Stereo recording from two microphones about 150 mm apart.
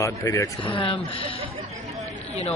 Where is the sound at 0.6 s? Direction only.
35° left (ahead or behind).